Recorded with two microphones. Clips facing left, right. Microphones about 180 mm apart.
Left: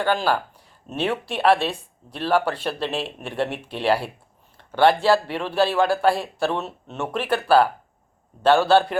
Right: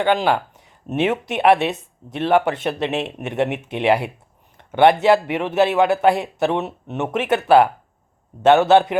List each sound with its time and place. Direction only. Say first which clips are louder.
0.0 s speech: right 4 dB; 20° right (ahead or behind)